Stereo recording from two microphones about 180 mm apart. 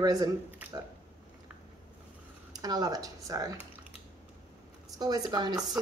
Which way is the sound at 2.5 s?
20° right (ahead or behind).